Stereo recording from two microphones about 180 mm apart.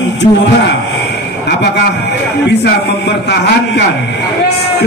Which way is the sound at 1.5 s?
65° left (ahead or behind).